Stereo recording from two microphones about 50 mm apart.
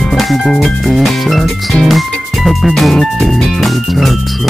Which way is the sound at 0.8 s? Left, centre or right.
Centre.